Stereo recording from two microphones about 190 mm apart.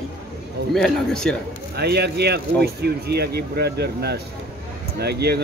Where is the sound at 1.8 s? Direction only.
60° right (ahead or behind).